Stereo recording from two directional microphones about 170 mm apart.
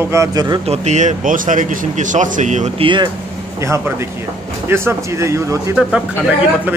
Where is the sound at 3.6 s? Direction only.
15° right (ahead or behind).